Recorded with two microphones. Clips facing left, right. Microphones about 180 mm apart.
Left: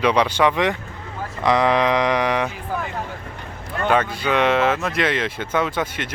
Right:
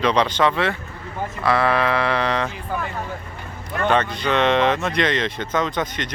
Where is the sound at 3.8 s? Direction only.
5° left (ahead or behind).